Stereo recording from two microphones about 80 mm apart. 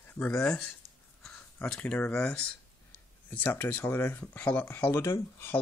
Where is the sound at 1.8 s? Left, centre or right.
Centre.